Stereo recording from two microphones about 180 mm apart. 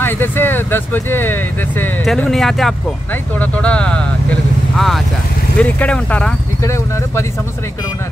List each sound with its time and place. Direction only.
0.0 s speech: 10° left (ahead or behind)